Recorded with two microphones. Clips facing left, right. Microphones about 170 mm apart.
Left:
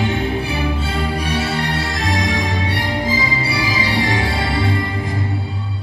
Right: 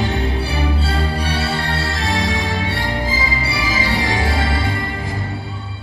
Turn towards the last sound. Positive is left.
turn(degrees=-25)  # may be behind; listen again after turning